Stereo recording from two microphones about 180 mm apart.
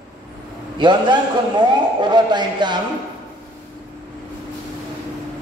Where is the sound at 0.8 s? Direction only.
25° right (ahead or behind).